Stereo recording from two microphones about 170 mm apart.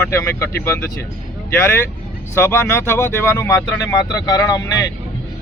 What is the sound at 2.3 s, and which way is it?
Speech, 15° left (ahead or behind).